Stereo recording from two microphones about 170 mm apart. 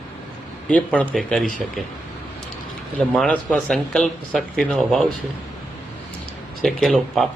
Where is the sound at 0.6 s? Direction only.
5° left (ahead or behind).